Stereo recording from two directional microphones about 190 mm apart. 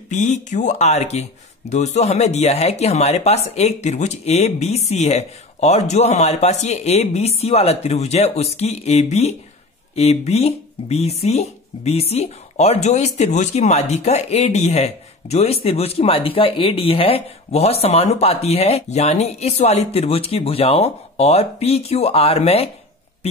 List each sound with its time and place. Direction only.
0.1 s speech: 40° left (ahead or behind)